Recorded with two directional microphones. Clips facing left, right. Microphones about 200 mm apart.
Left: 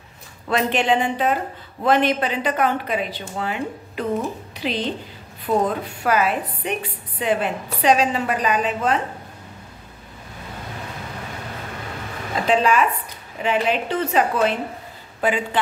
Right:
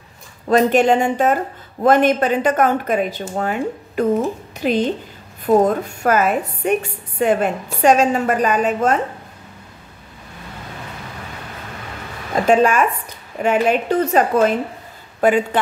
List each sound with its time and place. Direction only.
0.5 s a woman's voice: 40° right (ahead or behind)
12.4 s a woman's voice: 50° right (ahead or behind)